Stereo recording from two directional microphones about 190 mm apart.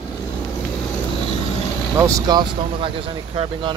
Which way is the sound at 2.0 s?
20° right (ahead or behind).